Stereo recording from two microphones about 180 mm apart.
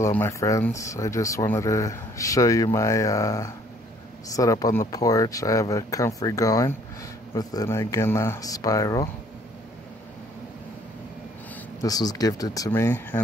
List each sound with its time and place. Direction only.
0.0 s speech: 15° left (ahead or behind)
11.8 s speech: 20° left (ahead or behind)